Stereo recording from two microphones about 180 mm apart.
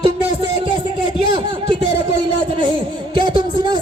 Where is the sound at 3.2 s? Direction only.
25° right (ahead or behind).